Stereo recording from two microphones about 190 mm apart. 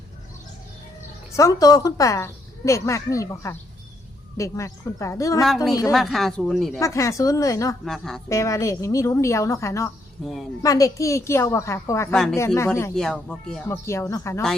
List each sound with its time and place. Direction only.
1.4 s a woman's voice: 20° left (ahead or behind)
5.9 s speech: centre (ahead or behind)
6.7 s a woman's voice: 15° left (ahead or behind)
7.9 s speech: centre (ahead or behind)
8.3 s a woman's voice: 15° left (ahead or behind)
10.2 s speech: centre (ahead or behind)
10.6 s a woman's voice: 15° left (ahead or behind)
12.1 s speech: centre (ahead or behind)
12.4 s a woman's voice: 10° left (ahead or behind)
13.7 s a woman's voice: 15° left (ahead or behind)